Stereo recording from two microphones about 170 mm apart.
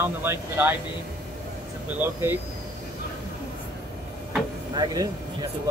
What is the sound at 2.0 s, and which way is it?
Speech, 15° right (ahead or behind).